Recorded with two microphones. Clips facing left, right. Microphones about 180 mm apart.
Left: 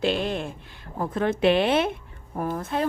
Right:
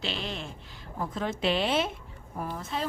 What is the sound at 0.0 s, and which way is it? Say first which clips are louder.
A woman's voice: left 10 dB; 50° left (ahead or behind).